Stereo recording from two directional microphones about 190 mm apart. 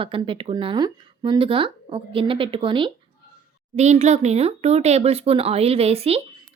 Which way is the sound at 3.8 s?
35° right (ahead or behind).